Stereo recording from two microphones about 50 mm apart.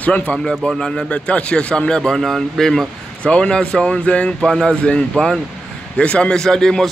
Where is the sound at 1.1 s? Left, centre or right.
Left; by 2.9 s centre.